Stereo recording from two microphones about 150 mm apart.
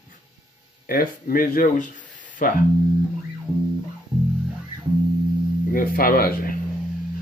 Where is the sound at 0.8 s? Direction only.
75° left (ahead or behind).